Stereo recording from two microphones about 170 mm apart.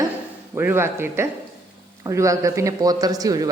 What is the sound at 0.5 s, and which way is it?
A man's voice, 15° right (ahead or behind).